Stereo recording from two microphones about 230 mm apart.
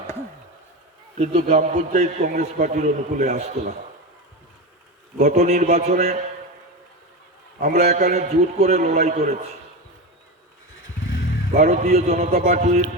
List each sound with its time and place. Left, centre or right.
1.2 s a man's voice: right
5.2 s a man's voice: right
7.6 s a man's voice: right
11.5 s a man's voice: right